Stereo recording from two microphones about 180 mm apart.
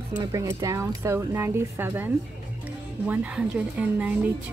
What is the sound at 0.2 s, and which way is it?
Speech, 20° right (ahead or behind).